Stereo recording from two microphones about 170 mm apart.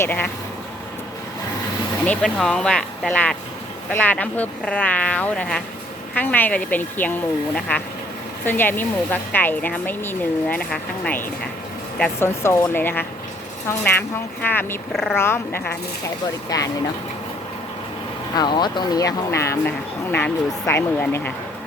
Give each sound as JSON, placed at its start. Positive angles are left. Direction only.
{"t": 0.0, "sound": "speech", "side_deg": 10}
{"t": 2.0, "sound": "speech", "side_deg": 5}
{"t": 16.5, "sound": "speech", "side_deg": 20}
{"t": 18.3, "sound": "speech", "side_deg": 25}